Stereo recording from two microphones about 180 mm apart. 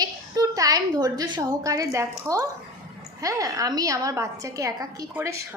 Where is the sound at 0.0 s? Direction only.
20° right (ahead or behind).